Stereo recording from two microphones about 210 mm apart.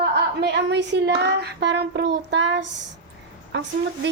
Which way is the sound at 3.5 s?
55° right (ahead or behind).